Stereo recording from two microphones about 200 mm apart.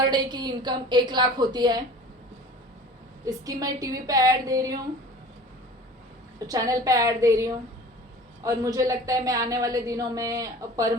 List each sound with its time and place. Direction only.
0.0 s a woman's voice: 20° right (ahead or behind)
3.2 s speech: 15° right (ahead or behind)
6.5 s speech: 15° right (ahead or behind)